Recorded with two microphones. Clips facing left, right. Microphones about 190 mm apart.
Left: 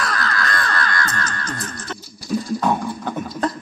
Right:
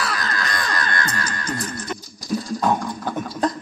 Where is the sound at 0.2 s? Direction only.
20° right (ahead or behind).